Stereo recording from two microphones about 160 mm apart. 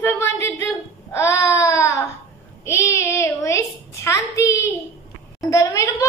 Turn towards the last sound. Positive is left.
turn(degrees=20)  # may be behind; listen again after turning